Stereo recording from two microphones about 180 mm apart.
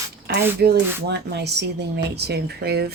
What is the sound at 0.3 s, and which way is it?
Rub, 60° right (ahead or behind).